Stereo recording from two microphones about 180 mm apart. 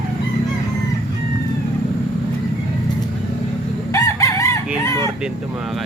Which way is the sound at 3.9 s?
15° left (ahead or behind).